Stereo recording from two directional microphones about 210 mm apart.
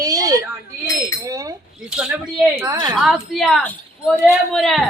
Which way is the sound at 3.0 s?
Centre (ahead or behind).